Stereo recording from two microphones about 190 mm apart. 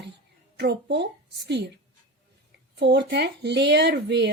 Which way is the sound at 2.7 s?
65° right (ahead or behind).